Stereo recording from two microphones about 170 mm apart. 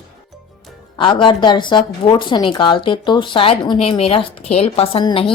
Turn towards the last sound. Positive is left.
turn(degrees=30)  # may be behind; listen again after turning